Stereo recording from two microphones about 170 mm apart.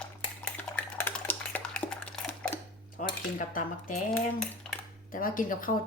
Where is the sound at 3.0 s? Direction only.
50° left (ahead or behind).